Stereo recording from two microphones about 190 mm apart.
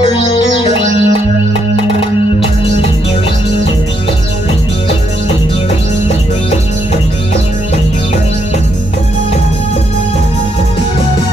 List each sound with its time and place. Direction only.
0.0 s music: 30° left (ahead or behind)